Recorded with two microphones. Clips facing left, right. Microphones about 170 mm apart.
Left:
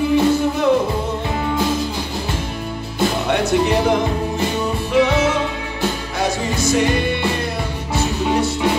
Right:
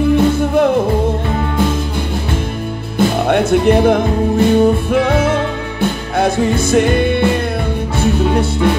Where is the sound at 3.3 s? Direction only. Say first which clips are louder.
Right 6 dB; 55° right (ahead or behind).